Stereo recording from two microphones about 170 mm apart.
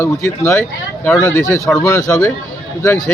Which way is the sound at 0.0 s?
15° left (ahead or behind).